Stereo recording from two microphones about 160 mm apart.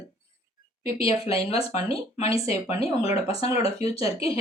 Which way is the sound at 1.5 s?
40° left (ahead or behind).